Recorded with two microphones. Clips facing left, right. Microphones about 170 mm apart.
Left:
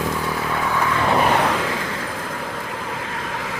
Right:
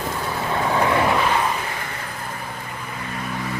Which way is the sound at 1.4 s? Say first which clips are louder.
Left 4 dB; 90° left.